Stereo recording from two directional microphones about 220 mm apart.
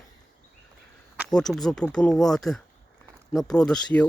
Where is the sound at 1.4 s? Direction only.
Centre (ahead or behind).